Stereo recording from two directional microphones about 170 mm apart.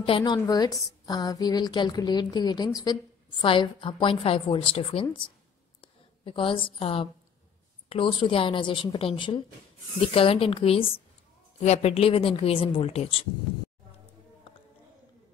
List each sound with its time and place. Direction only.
0.0 s a woman's voice: 30° left (ahead or behind)
5.8 s a sound: 30° left (ahead or behind)
7.9 s a woman's voice: 30° left (ahead or behind)